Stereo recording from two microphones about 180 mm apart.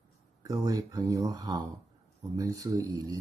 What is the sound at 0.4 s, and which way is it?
Speech, 20° right (ahead or behind).